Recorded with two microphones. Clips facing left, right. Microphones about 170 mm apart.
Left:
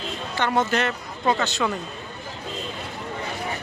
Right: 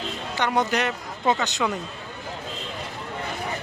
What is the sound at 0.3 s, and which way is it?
Speech, 15° right (ahead or behind).